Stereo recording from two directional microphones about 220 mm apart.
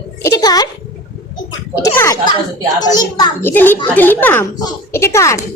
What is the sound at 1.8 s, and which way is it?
A child's voice, 15° left (ahead or behind).